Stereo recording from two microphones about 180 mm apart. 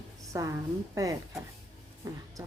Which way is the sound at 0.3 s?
15° right (ahead or behind).